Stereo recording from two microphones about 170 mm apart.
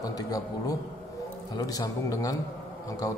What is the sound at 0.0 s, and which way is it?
Speech, 20° left (ahead or behind).